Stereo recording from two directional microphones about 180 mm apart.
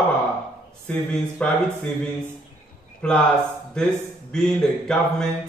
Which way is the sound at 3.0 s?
5° left (ahead or behind).